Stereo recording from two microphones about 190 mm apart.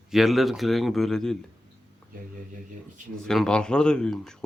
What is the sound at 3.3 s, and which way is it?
Speech, 5° left (ahead or behind).